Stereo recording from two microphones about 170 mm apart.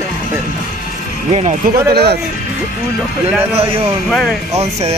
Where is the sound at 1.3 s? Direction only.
40° right (ahead or behind).